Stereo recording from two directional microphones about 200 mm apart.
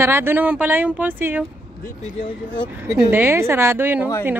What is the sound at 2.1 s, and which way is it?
Speech, 25° left (ahead or behind).